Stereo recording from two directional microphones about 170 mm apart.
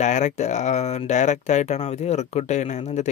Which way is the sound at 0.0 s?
45° left (ahead or behind).